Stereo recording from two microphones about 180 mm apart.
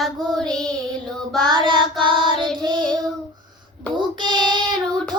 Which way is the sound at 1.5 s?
25° right (ahead or behind).